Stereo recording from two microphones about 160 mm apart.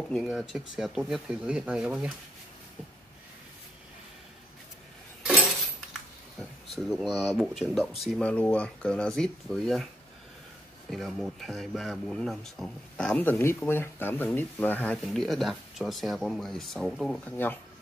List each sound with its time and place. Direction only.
0.1 s speech: centre (ahead or behind)
5.2 s a sound: 10° right (ahead or behind)
6.7 s speech: centre (ahead or behind)
10.9 s speech: centre (ahead or behind)